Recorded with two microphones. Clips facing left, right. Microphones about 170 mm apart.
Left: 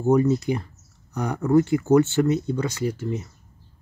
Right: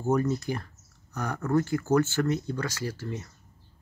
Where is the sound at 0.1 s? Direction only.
15° left (ahead or behind).